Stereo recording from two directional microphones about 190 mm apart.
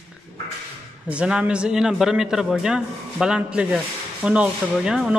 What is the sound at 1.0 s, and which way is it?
A man's voice, 5° right (ahead or behind).